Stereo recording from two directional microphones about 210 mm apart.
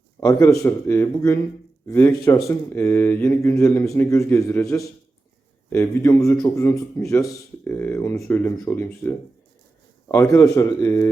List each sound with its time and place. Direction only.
0.2 s speech: 10° left (ahead or behind)